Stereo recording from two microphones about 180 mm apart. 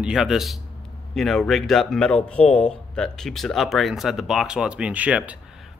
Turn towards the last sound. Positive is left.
turn(degrees=-10)  # may be behind; listen again after turning